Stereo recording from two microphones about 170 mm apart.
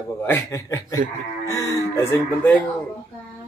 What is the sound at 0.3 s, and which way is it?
Speech, 15° left (ahead or behind).